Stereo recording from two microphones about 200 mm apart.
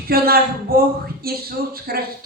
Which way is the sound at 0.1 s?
50° right (ahead or behind).